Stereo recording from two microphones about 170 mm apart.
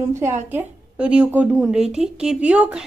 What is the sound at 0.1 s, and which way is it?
A woman's voice, 15° right (ahead or behind).